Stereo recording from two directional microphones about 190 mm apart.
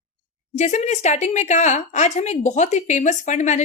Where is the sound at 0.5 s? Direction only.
40° left (ahead or behind).